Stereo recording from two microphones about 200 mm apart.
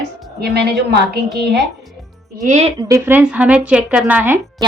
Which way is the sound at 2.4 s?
35° right (ahead or behind).